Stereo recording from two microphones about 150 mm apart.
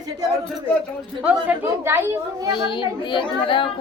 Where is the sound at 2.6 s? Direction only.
30° left (ahead or behind).